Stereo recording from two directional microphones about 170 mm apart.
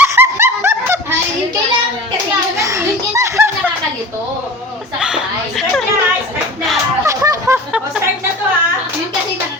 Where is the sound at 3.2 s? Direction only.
15° right (ahead or behind).